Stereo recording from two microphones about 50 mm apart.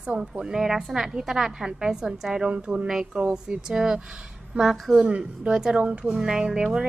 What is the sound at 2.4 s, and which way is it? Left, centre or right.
Speech, right.